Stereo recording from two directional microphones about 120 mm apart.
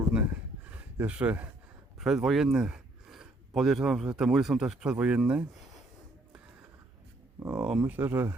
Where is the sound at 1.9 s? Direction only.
Centre (ahead or behind).